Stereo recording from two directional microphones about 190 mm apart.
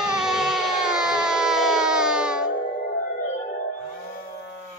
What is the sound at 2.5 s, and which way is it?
Music, 45° left (ahead or behind).